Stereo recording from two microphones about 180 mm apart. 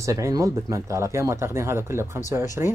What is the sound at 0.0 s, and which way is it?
Speech, 15° right (ahead or behind).